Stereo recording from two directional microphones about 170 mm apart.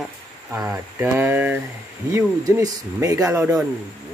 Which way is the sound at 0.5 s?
10° right (ahead or behind).